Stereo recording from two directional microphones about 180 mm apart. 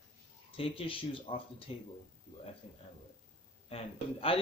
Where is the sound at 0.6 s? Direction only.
30° left (ahead or behind).